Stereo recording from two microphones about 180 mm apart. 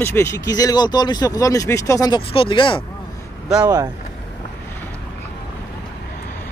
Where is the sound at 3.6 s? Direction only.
20° right (ahead or behind).